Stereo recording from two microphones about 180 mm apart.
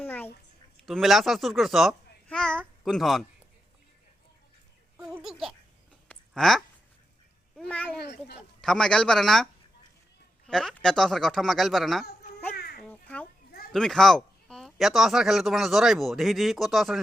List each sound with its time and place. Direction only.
0.0 s a sound: 10° left (ahead or behind)
0.9 s a child's voice: centre (ahead or behind)
4.9 s speech: 5° right (ahead or behind)
6.1 s a sound: 5° left (ahead or behind)
7.7 s a child's voice: 10° left (ahead or behind)
7.9 s a child's voice: 65° left (ahead or behind)
8.6 s speech: 5° left (ahead or behind)
12.5 s a sound: 60° left (ahead or behind)
12.8 s babbling: 5° left (ahead or behind)
13.7 s speech: centre (ahead or behind)